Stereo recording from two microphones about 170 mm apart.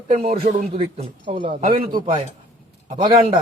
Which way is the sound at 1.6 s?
60° right (ahead or behind).